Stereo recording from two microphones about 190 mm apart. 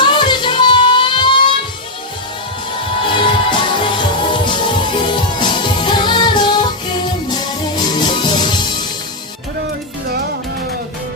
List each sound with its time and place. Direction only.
0.0 s music: 25° left (ahead or behind)
3.2 s music: 25° left (ahead or behind)
7.8 s music: 25° left (ahead or behind)